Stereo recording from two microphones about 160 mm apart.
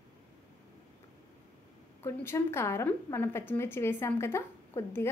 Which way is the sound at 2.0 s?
15° left (ahead or behind).